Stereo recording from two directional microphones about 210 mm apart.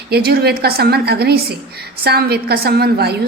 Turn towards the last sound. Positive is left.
turn(degrees=-50)  # may be behind; listen again after turning